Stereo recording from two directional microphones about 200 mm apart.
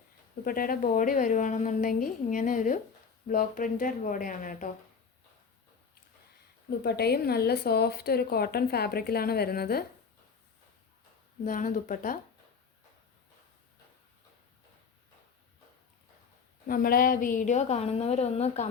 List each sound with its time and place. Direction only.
0.4 s a woman's voice: 45° left (ahead or behind)
6.7 s a woman's voice: 55° left (ahead or behind)
11.4 s a woman's voice: 40° left (ahead or behind)
16.6 s a woman's voice: 45° left (ahead or behind)